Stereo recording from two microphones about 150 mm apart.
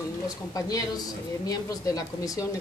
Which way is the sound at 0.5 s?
25° left (ahead or behind).